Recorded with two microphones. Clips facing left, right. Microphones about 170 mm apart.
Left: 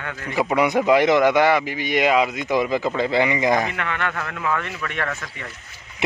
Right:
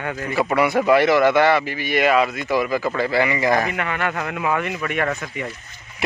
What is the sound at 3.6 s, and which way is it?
Speech, 10° right (ahead or behind).